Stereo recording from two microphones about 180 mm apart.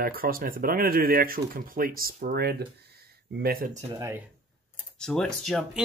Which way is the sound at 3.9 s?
15° right (ahead or behind).